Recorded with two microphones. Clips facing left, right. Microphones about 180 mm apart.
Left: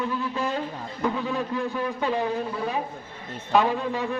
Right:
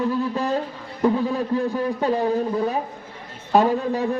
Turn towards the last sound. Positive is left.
turn(degrees=-40)  # may be behind; listen again after turning